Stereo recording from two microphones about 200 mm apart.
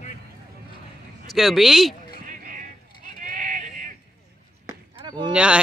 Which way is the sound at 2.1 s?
45° right (ahead or behind).